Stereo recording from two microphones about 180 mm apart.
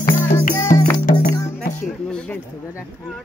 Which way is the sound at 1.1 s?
55° left (ahead or behind).